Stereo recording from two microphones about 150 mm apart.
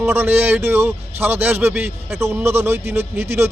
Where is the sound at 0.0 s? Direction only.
15° right (ahead or behind).